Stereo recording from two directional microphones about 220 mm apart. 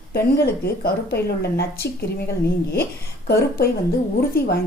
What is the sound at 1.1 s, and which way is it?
Speech, 45° left (ahead or behind).